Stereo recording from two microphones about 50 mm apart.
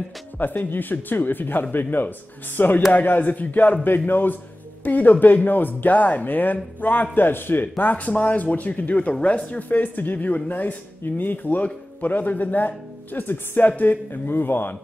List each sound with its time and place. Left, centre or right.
0.4 s speech: left
7.7 s speech: left